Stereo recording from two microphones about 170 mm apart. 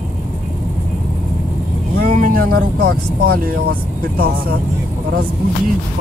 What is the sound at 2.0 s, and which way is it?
Speech, 55° right (ahead or behind).